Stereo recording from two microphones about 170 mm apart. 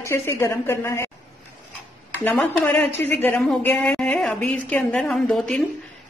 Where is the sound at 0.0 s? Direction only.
15° left (ahead or behind).